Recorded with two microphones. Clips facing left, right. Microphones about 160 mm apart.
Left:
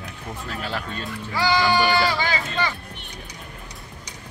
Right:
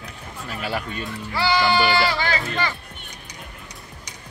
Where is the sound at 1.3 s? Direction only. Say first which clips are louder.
Even; 15° left (ahead or behind).